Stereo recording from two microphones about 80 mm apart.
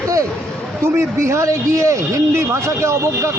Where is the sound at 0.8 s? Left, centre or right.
Right.